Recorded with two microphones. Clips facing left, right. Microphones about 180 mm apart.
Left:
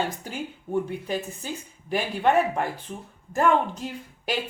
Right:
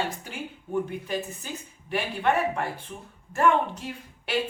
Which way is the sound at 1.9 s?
35° left (ahead or behind).